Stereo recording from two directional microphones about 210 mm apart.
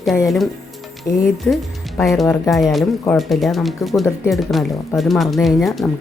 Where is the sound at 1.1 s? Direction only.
10° left (ahead or behind).